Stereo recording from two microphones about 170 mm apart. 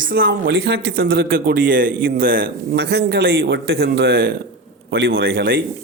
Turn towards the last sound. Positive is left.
turn(degrees=-65)  # may be behind; listen again after turning